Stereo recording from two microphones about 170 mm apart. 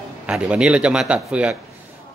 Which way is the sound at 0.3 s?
5° right (ahead or behind).